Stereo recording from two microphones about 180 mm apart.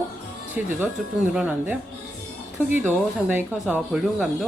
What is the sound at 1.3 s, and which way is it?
Speech, 5° right (ahead or behind).